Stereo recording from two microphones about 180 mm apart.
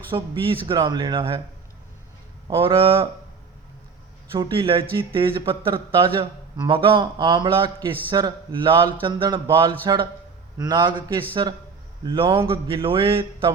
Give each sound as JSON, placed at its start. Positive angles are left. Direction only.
{"t": 0.1, "sound": "speech", "side_deg": -30}
{"t": 2.6, "sound": "speech", "side_deg": -30}
{"t": 4.3, "sound": "speech", "side_deg": -30}